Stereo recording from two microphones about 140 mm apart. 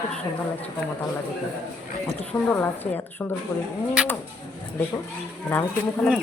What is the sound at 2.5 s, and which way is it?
Speech, 15° left (ahead or behind).